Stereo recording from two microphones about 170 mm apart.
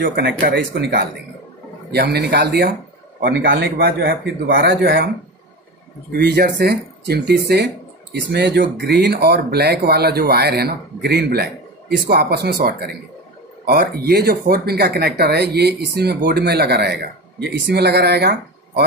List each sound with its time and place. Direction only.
0.0 s speech: 70° right (ahead or behind)
3.3 s speech: 85° right
6.1 s speech: 70° right (ahead or behind)